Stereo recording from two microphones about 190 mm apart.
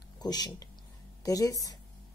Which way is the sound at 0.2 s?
20° left (ahead or behind).